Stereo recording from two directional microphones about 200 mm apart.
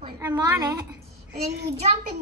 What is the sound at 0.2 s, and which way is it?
Speech, 15° right (ahead or behind).